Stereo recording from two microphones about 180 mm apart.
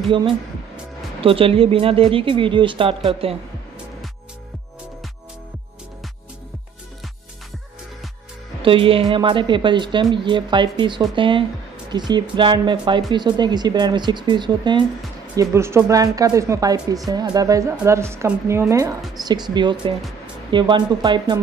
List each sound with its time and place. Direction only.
1.2 s speech: 30° right (ahead or behind)
8.6 s speech: 30° right (ahead or behind)
15.3 s a woman's voice: 15° right (ahead or behind)